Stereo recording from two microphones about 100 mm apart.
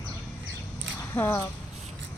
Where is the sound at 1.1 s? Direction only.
20° left (ahead or behind).